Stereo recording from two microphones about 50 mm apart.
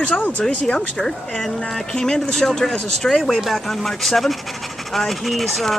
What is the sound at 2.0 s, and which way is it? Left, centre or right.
Speech, centre.